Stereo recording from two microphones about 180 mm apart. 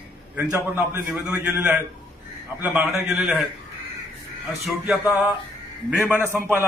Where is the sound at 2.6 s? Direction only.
10° right (ahead or behind).